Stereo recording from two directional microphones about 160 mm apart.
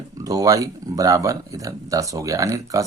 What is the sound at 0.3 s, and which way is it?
Speech, 20° right (ahead or behind).